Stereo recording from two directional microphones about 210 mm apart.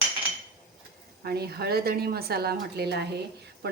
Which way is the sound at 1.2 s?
50° right (ahead or behind).